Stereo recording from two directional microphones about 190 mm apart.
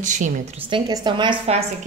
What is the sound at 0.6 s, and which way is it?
A woman's voice, 25° right (ahead or behind).